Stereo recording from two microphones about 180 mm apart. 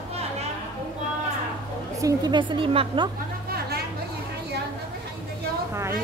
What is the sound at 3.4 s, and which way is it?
Chatter, 60° right (ahead or behind).